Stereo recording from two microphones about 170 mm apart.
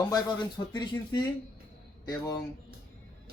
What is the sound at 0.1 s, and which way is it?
Speech, 25° left (ahead or behind).